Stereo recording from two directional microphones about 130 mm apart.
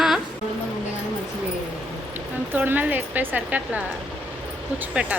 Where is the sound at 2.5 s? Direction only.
15° right (ahead or behind).